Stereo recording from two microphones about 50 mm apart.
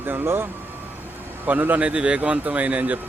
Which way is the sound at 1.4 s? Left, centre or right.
Right.